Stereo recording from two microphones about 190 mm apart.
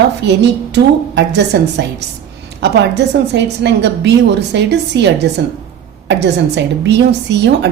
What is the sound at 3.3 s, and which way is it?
A woman's voice, 65° right (ahead or behind).